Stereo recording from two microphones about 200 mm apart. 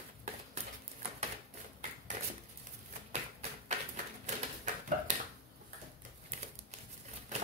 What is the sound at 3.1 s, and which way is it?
Tap, 35° right (ahead or behind).